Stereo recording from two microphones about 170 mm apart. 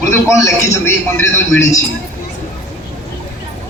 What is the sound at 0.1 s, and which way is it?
A man's voice, 20° left (ahead or behind).